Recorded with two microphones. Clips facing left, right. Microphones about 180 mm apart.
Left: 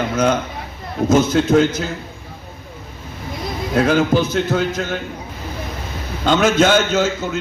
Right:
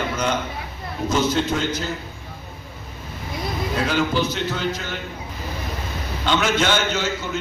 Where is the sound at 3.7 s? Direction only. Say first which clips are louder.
Left 7 dB; 50° left (ahead or behind).